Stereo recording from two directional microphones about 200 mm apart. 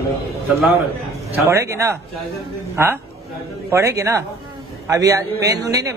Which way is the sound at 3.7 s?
15° right (ahead or behind).